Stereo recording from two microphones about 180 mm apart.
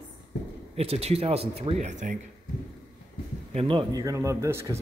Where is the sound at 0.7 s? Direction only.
35° right (ahead or behind).